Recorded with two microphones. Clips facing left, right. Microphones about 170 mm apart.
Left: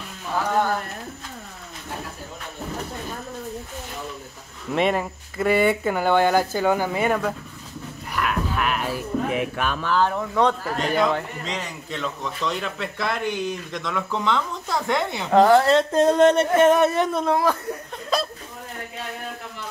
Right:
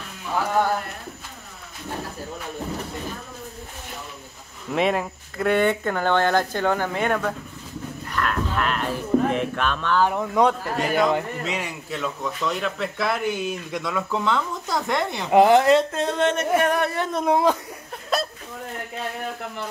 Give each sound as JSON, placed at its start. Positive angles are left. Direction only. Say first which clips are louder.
{"t": 4.7, "sound": "speech", "louder": "even", "side_deg": 0}
{"t": 8.1, "sound": "a sound", "louder": "even", "side_deg": 10}
{"t": 10.0, "sound": "speech", "louder": "right 2 dB", "side_deg": -15}
{"t": 15.3, "sound": "speech", "louder": "even", "side_deg": -15}
{"t": 15.9, "sound": "speech", "louder": "left 7 dB", "side_deg": 40}
{"t": 16.5, "sound": "speech", "louder": "left 5 dB", "side_deg": 20}
{"t": 17.3, "sound": "speech", "louder": "right 5 dB", "side_deg": -20}
{"t": 18.1, "sound": "a sound", "louder": "even", "side_deg": 0}